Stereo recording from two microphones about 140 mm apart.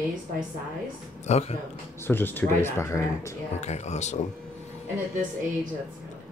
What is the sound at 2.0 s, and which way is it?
Speech, 15° left (ahead or behind).